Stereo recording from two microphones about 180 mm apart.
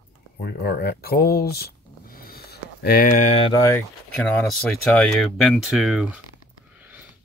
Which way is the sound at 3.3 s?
30° left (ahead or behind).